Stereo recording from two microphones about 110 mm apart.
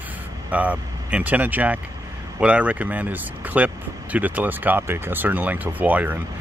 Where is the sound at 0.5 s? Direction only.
15° right (ahead or behind).